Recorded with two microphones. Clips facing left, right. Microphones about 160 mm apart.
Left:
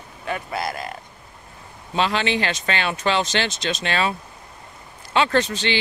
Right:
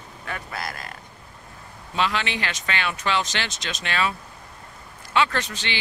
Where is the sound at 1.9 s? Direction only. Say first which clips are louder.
Left 4 dB; 30° left (ahead or behind).